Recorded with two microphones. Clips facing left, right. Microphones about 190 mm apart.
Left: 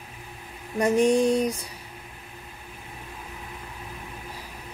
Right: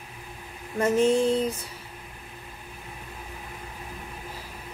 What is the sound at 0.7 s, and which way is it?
Speech, 15° left (ahead or behind).